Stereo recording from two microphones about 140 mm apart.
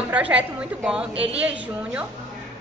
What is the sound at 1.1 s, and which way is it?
Speech, 40° right (ahead or behind).